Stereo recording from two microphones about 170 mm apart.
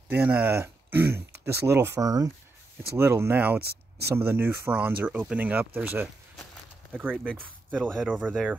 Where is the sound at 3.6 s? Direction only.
70° right (ahead or behind).